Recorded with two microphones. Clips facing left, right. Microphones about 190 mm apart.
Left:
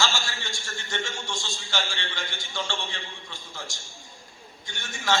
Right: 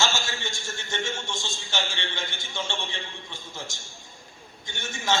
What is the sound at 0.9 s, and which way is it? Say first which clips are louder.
A man's voice: right 1 dB; 20° right (ahead or behind).